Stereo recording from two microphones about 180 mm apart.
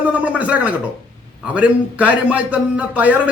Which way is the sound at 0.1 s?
10° right (ahead or behind).